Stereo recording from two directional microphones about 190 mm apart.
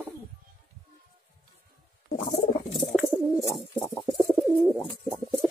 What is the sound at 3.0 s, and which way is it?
Bird, centre (ahead or behind).